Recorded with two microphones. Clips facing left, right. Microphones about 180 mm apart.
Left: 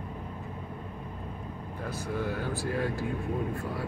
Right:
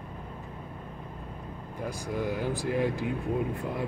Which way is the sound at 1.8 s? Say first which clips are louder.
Right 1 dB; 15° right (ahead or behind).